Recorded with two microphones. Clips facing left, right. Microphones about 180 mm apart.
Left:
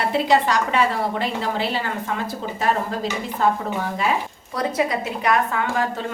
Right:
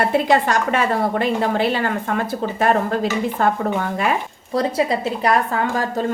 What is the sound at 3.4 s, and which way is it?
Speech, 55° right (ahead or behind).